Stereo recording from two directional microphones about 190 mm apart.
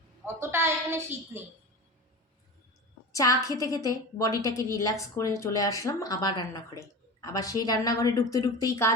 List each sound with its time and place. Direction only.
0.3 s a woman's voice: 15° right (ahead or behind)
3.1 s a woman's voice: 15° left (ahead or behind)